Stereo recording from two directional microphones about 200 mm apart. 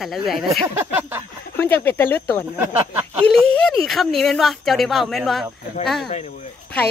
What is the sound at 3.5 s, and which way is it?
Speech, 5° left (ahead or behind).